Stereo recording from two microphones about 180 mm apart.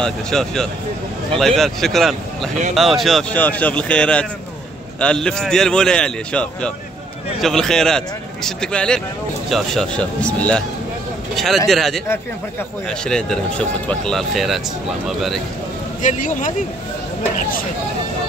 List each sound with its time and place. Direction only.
0.0 s speech: 5° left (ahead or behind)
16.0 s speech: 45° left (ahead or behind)